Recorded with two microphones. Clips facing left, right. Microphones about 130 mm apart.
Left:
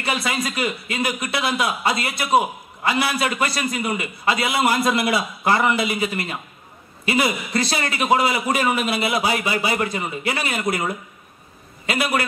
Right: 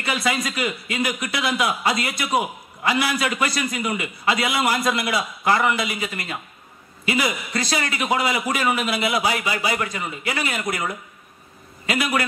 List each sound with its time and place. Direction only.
0.0 s a man's voice: 30° left (ahead or behind)
7.1 s a man's voice: 30° left (ahead or behind)